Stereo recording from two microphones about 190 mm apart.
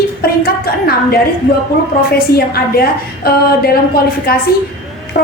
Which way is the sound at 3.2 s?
55° left (ahead or behind).